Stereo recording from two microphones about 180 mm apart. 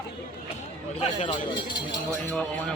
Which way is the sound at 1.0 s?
30° left (ahead or behind).